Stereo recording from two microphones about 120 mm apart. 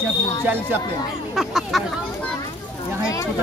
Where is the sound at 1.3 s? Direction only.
Centre (ahead or behind).